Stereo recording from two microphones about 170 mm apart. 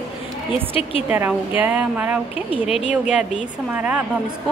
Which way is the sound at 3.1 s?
5° right (ahead or behind).